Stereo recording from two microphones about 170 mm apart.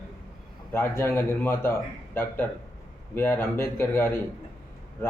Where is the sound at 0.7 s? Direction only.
15° left (ahead or behind).